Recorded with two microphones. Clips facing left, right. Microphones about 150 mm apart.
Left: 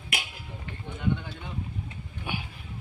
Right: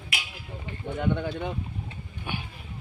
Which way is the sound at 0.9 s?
75° right (ahead or behind).